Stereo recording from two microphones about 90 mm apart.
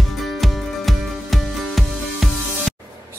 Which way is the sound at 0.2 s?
Centre (ahead or behind).